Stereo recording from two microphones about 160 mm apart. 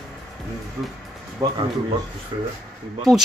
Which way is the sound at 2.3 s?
25° right (ahead or behind).